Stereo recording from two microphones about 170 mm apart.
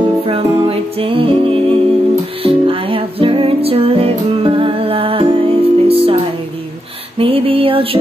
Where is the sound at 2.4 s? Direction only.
30° right (ahead or behind).